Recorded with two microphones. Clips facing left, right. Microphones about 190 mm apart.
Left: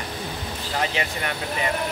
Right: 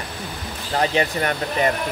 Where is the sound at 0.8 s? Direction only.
40° right (ahead or behind).